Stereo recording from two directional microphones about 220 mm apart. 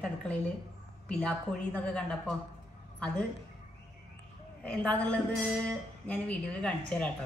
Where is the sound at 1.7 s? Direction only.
5° left (ahead or behind).